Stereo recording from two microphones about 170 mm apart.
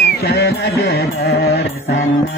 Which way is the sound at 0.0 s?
70° left (ahead or behind).